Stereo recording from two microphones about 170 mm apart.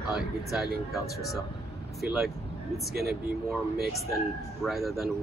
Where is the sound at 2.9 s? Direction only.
65° right (ahead or behind).